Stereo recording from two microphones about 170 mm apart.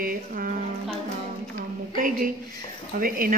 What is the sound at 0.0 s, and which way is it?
Speech, 55° right (ahead or behind).